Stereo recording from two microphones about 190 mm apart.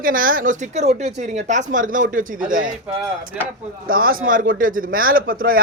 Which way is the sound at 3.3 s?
5° right (ahead or behind).